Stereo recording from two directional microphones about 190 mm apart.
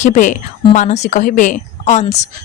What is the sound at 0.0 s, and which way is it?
Speech, 40° left (ahead or behind).